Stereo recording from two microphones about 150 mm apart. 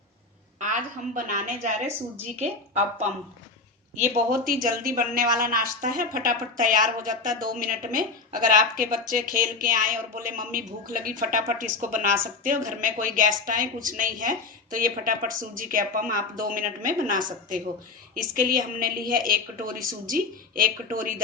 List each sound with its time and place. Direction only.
0.6 s a woman's voice: 60° right (ahead or behind)
3.9 s a woman's voice: 60° right (ahead or behind)